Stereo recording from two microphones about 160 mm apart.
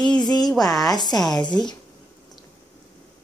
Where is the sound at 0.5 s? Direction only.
Centre (ahead or behind).